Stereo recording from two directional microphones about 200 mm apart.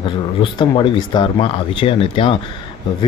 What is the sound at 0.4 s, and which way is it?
Speech, 25° left (ahead or behind).